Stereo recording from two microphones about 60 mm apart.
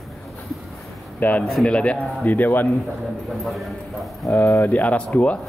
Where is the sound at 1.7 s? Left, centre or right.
Centre.